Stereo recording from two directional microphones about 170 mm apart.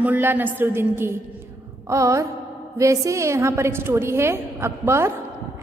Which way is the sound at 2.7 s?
20° right (ahead or behind).